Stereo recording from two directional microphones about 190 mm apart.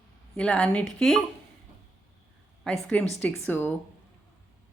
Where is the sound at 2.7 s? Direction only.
5° left (ahead or behind).